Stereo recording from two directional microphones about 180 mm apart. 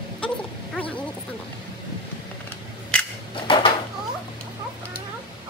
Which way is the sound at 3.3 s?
30° left (ahead or behind).